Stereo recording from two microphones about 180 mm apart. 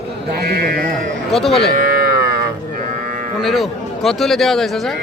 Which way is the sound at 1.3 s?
Centre (ahead or behind).